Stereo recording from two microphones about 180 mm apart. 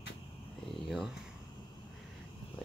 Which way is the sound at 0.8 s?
Centre (ahead or behind).